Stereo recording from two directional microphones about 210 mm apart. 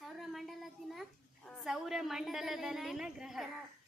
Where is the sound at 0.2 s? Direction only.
Centre (ahead or behind).